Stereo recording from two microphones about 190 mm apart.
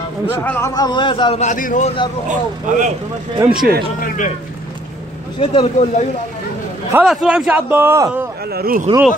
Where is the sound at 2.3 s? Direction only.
40° right (ahead or behind).